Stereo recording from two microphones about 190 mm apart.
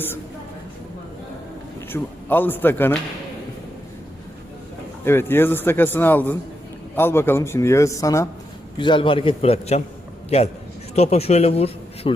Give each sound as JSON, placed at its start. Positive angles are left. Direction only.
{"t": 1.9, "sound": "speech", "side_deg": 10}
{"t": 5.0, "sound": "a man's voice", "side_deg": 10}